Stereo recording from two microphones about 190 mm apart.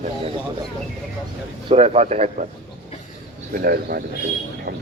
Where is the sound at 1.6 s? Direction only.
30° right (ahead or behind).